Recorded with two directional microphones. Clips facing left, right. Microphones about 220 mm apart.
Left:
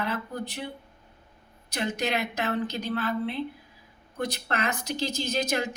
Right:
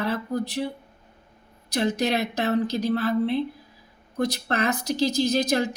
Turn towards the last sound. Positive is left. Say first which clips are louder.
# right 6 dB
turn(degrees=-35)  # may be behind; listen again after turning